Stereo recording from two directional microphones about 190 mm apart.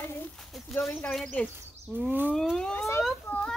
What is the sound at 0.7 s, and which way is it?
Speech, centre (ahead or behind).